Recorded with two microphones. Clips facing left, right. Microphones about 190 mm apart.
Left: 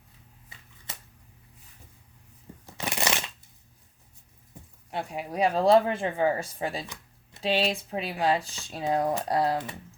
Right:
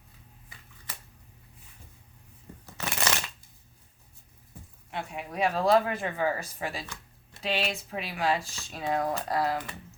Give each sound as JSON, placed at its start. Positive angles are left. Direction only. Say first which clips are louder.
{"t": 0.5, "sound": "shuffling cards", "louder": "left 1 dB", "side_deg": 25}
{"t": 2.7, "sound": "shuffling cards", "louder": "left 2 dB", "side_deg": 15}
{"t": 4.9, "sound": "speech", "louder": "left 3 dB", "side_deg": 35}